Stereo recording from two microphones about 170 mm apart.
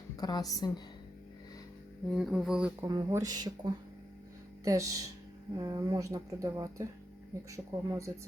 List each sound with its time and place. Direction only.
0.2 s a woman's voice: 20° left (ahead or behind)
2.0 s music: centre (ahead or behind)
2.8 s speech: 20° right (ahead or behind)
4.6 s speech: 20° right (ahead or behind)